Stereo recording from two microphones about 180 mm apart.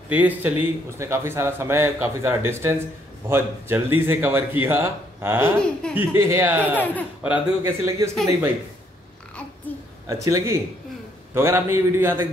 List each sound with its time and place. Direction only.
0.1 s speech: 10° right (ahead or behind)
5.6 s speech: 5° left (ahead or behind)
5.9 s speech: 15° right (ahead or behind)
10.0 s speech: 20° right (ahead or behind)